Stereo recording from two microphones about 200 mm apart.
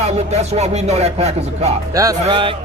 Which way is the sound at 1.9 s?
15° right (ahead or behind).